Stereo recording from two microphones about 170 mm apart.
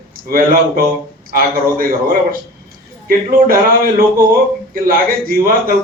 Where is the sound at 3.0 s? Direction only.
55° right (ahead or behind).